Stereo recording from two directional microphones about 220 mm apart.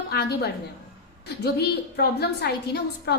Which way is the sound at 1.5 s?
45° left (ahead or behind).